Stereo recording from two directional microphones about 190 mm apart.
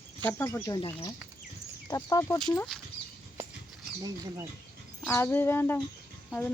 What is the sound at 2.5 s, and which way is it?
Speech, 5° left (ahead or behind).